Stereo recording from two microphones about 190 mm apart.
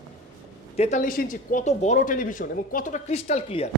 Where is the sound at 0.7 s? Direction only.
40° left (ahead or behind).